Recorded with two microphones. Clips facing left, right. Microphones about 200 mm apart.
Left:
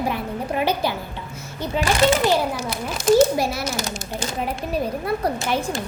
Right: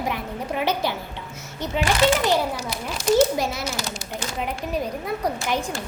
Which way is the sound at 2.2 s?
15° right (ahead or behind).